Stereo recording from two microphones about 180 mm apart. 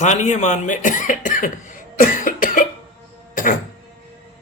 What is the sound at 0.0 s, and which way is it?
Speech, 40° left (ahead or behind).